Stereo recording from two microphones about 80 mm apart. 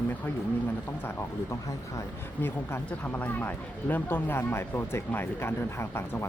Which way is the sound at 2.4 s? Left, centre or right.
Left.